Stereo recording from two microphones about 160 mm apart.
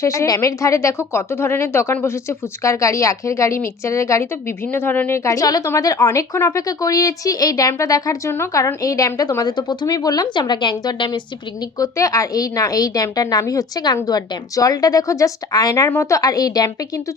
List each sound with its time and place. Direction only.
0.0 s a woman's voice: 20° left (ahead or behind)